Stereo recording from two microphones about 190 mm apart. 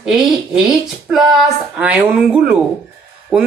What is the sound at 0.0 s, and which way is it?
Speech, centre (ahead or behind).